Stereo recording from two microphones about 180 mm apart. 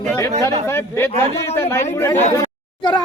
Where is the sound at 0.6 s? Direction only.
15° left (ahead or behind).